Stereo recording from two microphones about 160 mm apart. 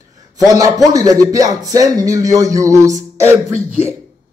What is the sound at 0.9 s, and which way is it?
Speech, 20° right (ahead or behind).